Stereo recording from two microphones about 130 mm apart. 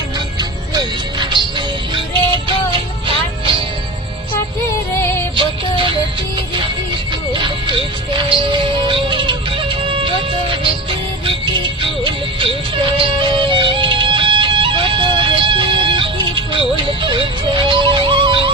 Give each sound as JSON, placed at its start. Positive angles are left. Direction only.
{"t": 0.7, "sound": "music", "side_deg": -35}
{"t": 5.4, "sound": "music", "side_deg": -40}
{"t": 7.3, "sound": "music", "side_deg": -40}